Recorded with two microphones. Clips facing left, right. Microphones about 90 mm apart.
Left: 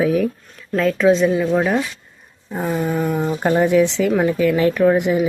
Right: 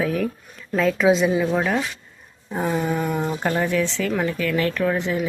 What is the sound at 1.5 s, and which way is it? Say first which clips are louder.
Speech: left 4 dB; 5° left (ahead or behind).